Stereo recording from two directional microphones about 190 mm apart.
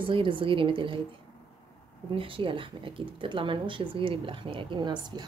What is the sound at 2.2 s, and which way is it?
A woman's voice, 30° right (ahead or behind).